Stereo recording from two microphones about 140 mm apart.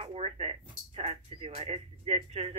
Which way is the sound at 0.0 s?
50° right (ahead or behind).